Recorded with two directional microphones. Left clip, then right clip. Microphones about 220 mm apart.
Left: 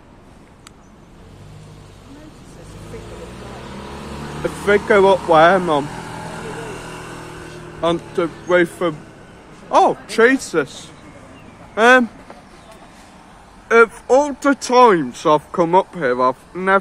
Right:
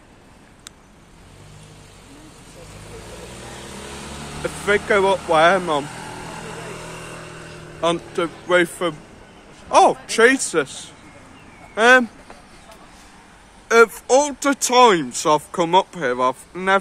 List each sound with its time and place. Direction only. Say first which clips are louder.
4.4 s speech: left 3 dB; 10° left (ahead or behind)
6.2 s vehicle: left 3 dB; 20° left (ahead or behind)
6.8 s vehicle: left 2 dB; 40° left (ahead or behind)
7.8 s speech: left 2 dB; 5° right (ahead or behind)
13.7 s speech: left 2 dB; 10° right (ahead or behind)